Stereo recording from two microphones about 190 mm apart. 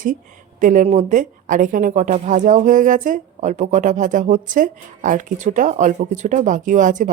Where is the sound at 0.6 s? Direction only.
40° right (ahead or behind).